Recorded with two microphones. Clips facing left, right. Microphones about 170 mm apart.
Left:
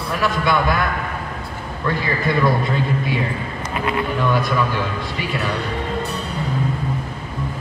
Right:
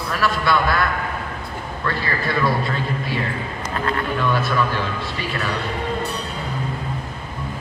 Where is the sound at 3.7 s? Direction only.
10° left (ahead or behind).